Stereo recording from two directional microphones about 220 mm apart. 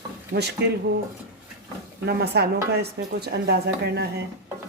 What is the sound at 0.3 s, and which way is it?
Speech, 45° right (ahead or behind).